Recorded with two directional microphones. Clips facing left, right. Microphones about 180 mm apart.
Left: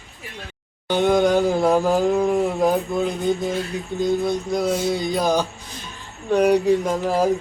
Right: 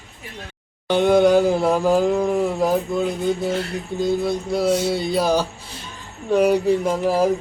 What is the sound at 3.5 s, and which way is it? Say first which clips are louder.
Music: right 1 dB; 70° right (ahead or behind).